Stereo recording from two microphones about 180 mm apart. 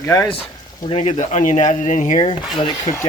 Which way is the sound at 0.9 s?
35° left (ahead or behind).